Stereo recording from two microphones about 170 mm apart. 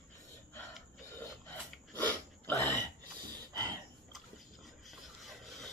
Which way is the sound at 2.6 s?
20° right (ahead or behind).